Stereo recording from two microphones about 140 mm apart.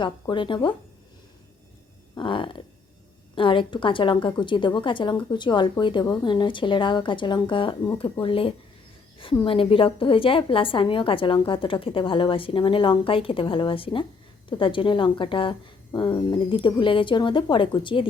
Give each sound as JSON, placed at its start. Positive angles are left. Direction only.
{"t": 0.0, "sound": "a woman's voice", "side_deg": 35}
{"t": 2.1, "sound": "a woman's voice", "side_deg": 35}